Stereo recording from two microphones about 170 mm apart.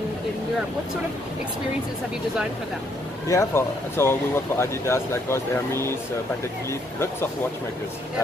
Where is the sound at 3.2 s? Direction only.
15° left (ahead or behind).